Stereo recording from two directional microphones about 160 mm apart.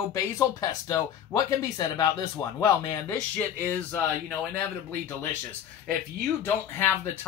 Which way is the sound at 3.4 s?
10° left (ahead or behind).